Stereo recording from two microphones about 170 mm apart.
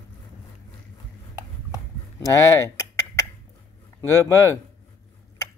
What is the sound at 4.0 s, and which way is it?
Speech, 15° left (ahead or behind).